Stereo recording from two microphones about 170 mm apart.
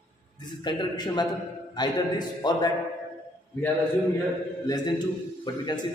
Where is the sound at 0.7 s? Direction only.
25° left (ahead or behind).